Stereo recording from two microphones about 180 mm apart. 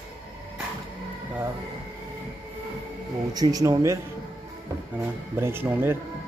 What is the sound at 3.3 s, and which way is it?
Speech, 20° right (ahead or behind).